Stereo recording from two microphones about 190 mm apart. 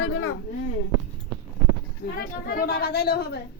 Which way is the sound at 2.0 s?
60° left (ahead or behind).